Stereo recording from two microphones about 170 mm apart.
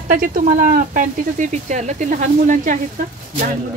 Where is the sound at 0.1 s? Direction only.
50° right (ahead or behind).